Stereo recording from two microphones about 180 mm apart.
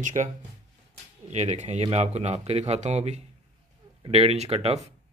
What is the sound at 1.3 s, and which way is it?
Speech, 40° right (ahead or behind).